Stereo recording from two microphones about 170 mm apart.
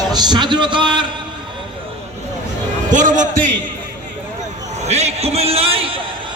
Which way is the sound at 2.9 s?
50° right (ahead or behind).